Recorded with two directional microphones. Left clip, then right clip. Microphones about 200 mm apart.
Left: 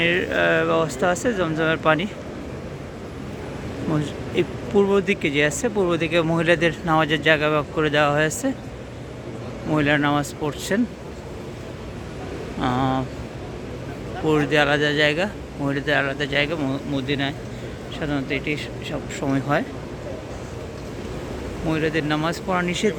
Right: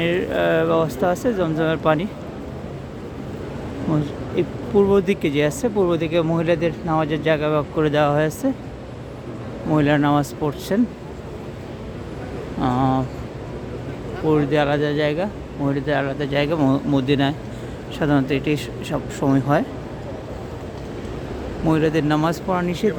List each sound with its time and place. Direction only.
0.0 s speech: 10° right (ahead or behind)
4.0 s speech: 10° right (ahead or behind)
9.7 s speech: 15° right (ahead or behind)
12.5 s speech: 10° right (ahead or behind)
14.3 s speech: 10° right (ahead or behind); by 18.9 s 30° right (ahead or behind)
19.2 s speech: 15° right (ahead or behind)
21.7 s speech: 20° right (ahead or behind)
22.4 s speech: 5° right (ahead or behind)